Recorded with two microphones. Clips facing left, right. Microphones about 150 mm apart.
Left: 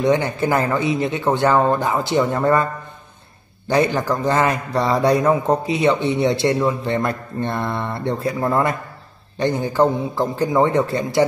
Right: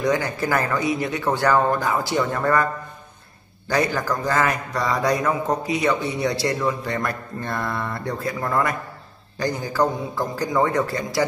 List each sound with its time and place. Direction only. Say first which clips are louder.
0.0 s a man's voice: left 4 dB; 25° left (ahead or behind)